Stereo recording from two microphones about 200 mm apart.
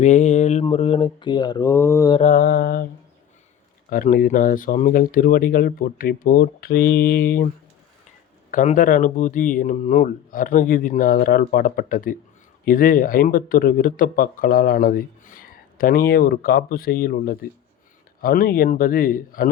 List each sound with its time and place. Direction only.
0.0 s speech: 35° left (ahead or behind)
0.6 s mantra: 30° left (ahead or behind)
2.3 s speech: 50° left (ahead or behind)
3.8 s speech: 45° left (ahead or behind)
8.4 s speech: 40° left (ahead or behind)